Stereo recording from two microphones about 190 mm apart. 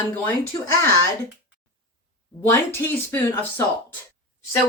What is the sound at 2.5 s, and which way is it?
Speech, 10° left (ahead or behind).